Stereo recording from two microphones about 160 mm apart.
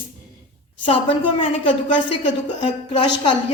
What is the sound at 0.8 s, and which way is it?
A woman's voice, 35° left (ahead or behind).